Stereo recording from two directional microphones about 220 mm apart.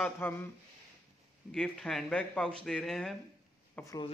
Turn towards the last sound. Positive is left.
turn(degrees=15)  # may be behind; listen again after turning